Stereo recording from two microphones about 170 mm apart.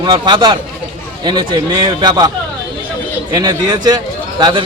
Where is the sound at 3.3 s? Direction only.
25° right (ahead or behind).